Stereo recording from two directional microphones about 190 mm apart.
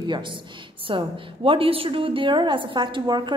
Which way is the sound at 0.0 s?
25° right (ahead or behind).